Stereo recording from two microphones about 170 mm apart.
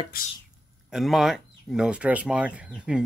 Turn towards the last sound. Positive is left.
turn(degrees=-5)  # may be behind; listen again after turning